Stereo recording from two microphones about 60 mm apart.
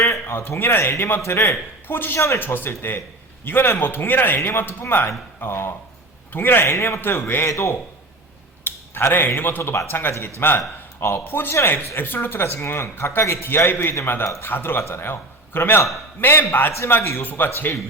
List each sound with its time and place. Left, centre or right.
0.0 s a man's voice: left
2.1 s a man's voice: left
2.4 s a man's voice: left
7.4 s a man's voice: left
8.6 s a man's voice: left
17.0 s speech: left
17.2 s a man's voice: left